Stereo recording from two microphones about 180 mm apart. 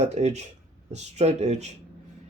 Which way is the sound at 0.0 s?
40° right (ahead or behind).